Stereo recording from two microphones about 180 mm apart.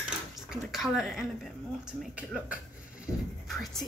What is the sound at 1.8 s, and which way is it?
Speech, 5° right (ahead or behind).